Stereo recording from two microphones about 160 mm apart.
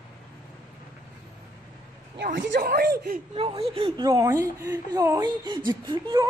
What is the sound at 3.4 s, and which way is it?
Speech, 35° right (ahead or behind).